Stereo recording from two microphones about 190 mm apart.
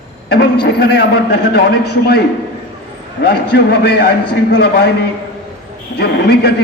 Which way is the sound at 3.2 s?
60° left (ahead or behind).